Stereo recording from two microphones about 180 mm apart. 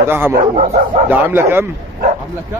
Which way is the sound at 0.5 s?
40° right (ahead or behind).